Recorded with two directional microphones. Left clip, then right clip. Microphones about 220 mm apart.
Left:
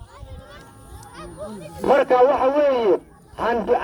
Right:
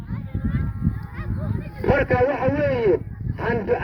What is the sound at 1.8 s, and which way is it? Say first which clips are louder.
A man's voice: left 4 dB; 35° left (ahead or behind).